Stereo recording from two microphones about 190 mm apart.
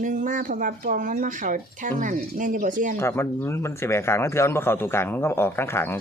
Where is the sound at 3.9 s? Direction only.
15° left (ahead or behind).